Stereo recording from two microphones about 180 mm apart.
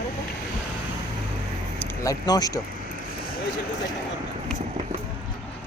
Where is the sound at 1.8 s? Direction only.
20° left (ahead or behind).